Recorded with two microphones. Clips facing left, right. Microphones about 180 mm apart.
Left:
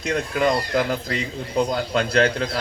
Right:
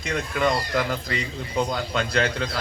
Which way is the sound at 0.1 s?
35° left (ahead or behind).